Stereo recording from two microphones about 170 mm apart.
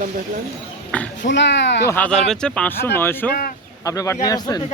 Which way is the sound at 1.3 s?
90° left.